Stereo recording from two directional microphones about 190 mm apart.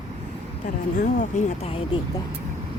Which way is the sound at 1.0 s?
40° left (ahead or behind).